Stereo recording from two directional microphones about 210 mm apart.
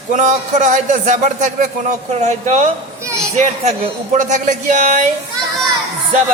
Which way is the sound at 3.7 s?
35° right (ahead or behind).